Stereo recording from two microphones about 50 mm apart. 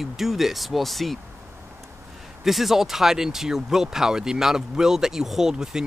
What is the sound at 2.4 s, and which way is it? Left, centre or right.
Speech, centre.